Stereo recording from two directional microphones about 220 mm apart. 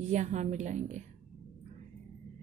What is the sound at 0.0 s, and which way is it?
A woman's voice, 30° right (ahead or behind).